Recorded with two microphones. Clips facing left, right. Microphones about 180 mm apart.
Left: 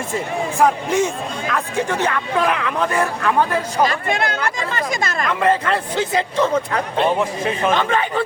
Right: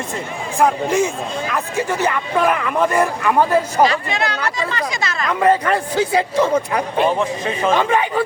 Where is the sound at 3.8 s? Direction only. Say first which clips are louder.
Right 1 dB; 50° left (ahead or behind).